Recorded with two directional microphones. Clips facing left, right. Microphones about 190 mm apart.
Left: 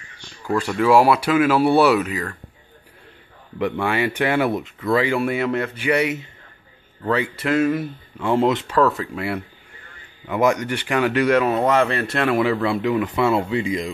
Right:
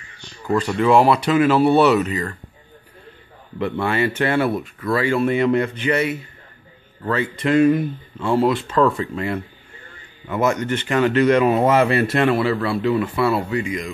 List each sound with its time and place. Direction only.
0.6 s speech: 5° left (ahead or behind)
3.5 s speech: 15° left (ahead or behind)
5.9 s speech: 15° left (ahead or behind)
7.4 s speech: 5° left (ahead or behind)
8.2 s speech: 20° left (ahead or behind)
8.7 s speech: 5° left (ahead or behind)
11.4 s speech: 5° right (ahead or behind)
12.3 s speech: 10° left (ahead or behind); by 13.9 s 30° left (ahead or behind)